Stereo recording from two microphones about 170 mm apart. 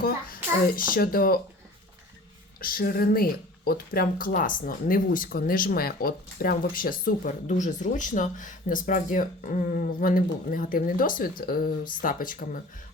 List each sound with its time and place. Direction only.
0.8 s speech: 60° left (ahead or behind)
2.6 s speech: 60° left (ahead or behind)